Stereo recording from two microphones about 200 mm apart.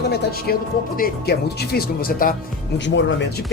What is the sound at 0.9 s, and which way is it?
Speech, 50° left (ahead or behind).